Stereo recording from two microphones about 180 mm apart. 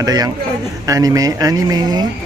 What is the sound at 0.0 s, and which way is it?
Speech, 20° right (ahead or behind).